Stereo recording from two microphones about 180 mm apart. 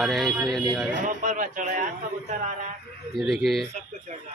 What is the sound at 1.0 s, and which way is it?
A man's voice, 45° right (ahead or behind).